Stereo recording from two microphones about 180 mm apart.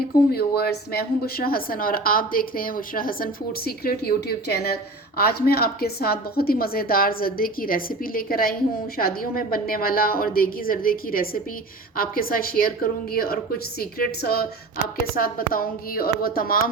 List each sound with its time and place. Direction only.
0.3 s a woman's voice: 60° left (ahead or behind)